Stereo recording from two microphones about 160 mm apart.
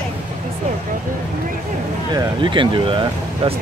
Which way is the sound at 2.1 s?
30° right (ahead or behind).